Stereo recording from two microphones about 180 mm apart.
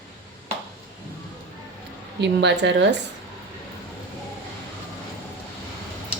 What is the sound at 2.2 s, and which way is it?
Speech, 75° right (ahead or behind).